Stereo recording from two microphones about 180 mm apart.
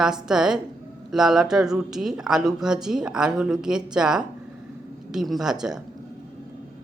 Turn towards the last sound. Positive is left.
turn(degrees=-5)  # may be behind; listen again after turning